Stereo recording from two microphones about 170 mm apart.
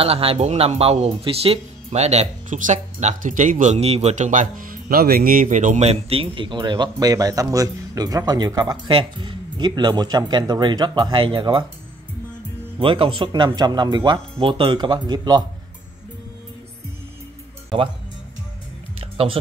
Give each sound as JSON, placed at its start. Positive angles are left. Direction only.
{"t": 0.0, "sound": "speech", "side_deg": -35}
{"t": 12.7, "sound": "speech", "side_deg": -30}
{"t": 18.9, "sound": "music", "side_deg": -35}